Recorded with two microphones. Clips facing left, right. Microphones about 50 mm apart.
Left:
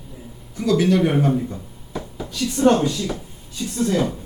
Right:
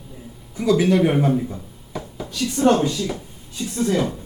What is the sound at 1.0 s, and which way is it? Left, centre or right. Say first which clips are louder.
Speech: right 1 dB; centre.